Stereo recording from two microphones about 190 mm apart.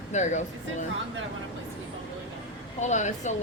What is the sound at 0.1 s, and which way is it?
Speech, 40° left (ahead or behind).